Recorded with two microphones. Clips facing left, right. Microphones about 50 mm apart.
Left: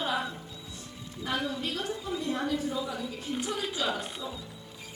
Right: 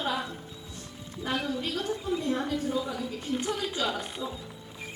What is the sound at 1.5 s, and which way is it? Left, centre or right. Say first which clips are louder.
Speech: right 2 dB; centre.